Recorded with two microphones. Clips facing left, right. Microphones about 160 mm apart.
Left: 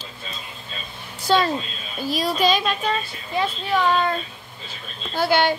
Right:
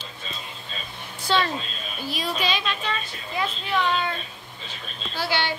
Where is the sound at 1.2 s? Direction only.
40° left (ahead or behind).